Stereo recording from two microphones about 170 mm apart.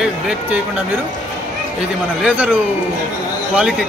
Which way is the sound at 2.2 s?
10° right (ahead or behind).